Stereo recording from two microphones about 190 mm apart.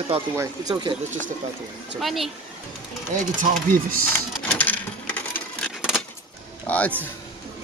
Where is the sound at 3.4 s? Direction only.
45° right (ahead or behind).